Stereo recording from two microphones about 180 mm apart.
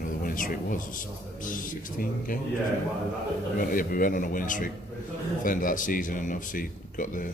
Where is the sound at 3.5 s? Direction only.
50° left (ahead or behind).